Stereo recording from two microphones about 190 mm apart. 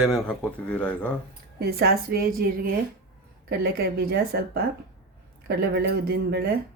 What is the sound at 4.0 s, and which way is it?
Speech, 55° right (ahead or behind).